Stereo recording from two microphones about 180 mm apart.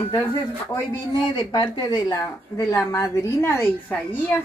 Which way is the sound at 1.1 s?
25° left (ahead or behind).